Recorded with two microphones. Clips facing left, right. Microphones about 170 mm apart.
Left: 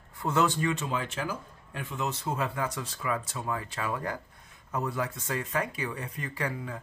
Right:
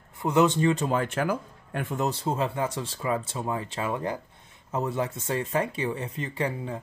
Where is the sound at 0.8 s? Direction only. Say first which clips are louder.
Right 7 dB; 50° right (ahead or behind).